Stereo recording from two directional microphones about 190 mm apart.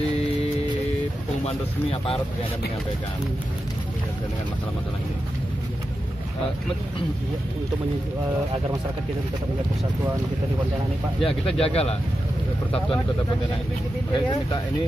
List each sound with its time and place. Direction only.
1.4 s speech: 30° left (ahead or behind)
11.6 s speech: 30° left (ahead or behind)
14.1 s speech: 20° left (ahead or behind)